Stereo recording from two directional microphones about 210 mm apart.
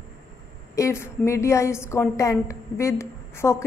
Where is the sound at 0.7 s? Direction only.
15° left (ahead or behind).